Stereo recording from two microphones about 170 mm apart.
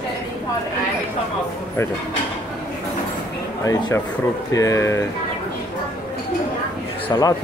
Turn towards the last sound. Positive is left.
turn(degrees=20)  # may be behind; listen again after turning